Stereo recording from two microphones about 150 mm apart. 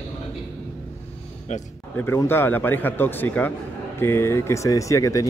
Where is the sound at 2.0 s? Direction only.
15° left (ahead or behind).